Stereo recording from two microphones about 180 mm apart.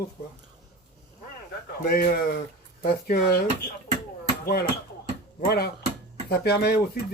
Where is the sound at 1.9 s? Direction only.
55° left (ahead or behind).